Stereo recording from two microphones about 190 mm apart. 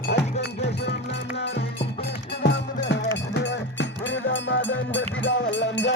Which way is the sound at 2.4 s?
65° left (ahead or behind).